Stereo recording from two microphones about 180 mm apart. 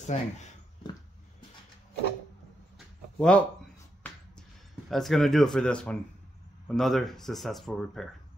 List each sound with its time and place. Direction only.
0.0 s speech: 40° left (ahead or behind)
3.2 s speech: 5° left (ahead or behind)
4.0 s a sound: 5° left (ahead or behind)
6.7 s speech: centre (ahead or behind)